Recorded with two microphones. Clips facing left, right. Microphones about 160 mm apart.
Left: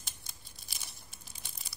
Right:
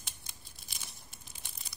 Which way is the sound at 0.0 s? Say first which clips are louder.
Even; centre (ahead or behind).